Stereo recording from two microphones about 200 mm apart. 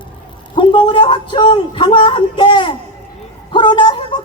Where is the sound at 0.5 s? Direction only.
25° left (ahead or behind).